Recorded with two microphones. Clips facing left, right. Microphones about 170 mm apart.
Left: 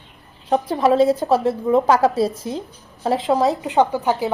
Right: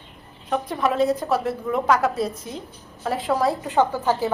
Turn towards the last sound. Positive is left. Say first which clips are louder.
# left 2 dB
turn(degrees=15)  # may be behind; listen again after turning